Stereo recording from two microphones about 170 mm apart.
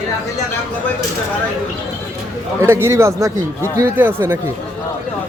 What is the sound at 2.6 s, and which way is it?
Speech, 15° right (ahead or behind).